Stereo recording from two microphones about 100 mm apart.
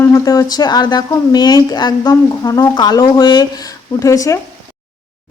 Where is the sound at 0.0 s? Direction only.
35° left (ahead or behind).